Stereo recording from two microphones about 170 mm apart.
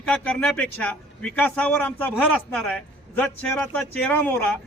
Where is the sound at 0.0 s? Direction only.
5° left (ahead or behind).